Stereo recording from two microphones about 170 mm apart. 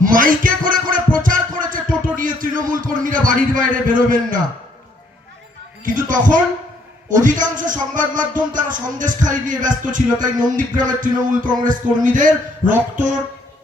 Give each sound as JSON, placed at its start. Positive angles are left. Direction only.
{"t": 0.0, "sound": "music", "side_deg": -55}
{"t": 5.8, "sound": "a man's voice", "side_deg": -50}